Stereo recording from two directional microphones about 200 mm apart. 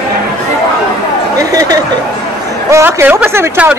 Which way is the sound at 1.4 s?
15° right (ahead or behind).